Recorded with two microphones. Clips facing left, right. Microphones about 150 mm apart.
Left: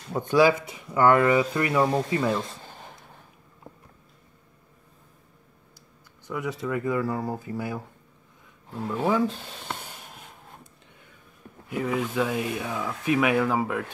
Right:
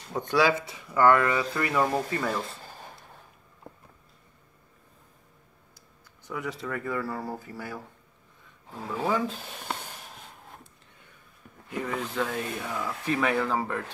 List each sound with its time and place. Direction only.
0.1 s speech: 15° left (ahead or behind)
6.2 s speech: 15° left (ahead or behind)
9.3 s speech: 5° right (ahead or behind)
11.7 s speech: 5° left (ahead or behind)